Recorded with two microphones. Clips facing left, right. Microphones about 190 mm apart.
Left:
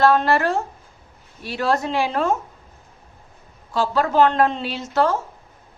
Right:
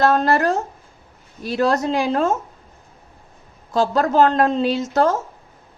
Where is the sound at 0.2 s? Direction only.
40° right (ahead or behind).